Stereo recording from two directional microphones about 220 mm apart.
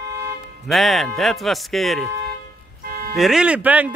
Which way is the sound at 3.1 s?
Centre (ahead or behind).